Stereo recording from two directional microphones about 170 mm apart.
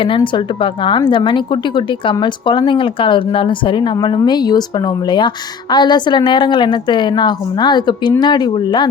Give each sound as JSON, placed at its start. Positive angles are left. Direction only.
{"t": 0.2, "sound": "speech", "side_deg": 30}